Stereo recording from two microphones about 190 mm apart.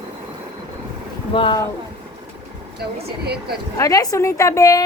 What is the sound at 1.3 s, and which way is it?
Speech, 25° left (ahead or behind).